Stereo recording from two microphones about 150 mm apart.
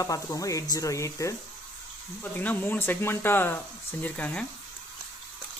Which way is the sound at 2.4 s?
10° left (ahead or behind).